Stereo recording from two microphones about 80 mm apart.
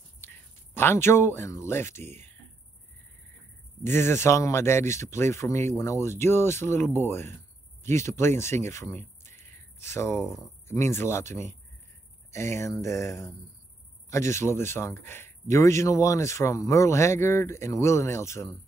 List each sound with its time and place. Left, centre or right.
0.2 s speech: left
3.8 s a man's voice: left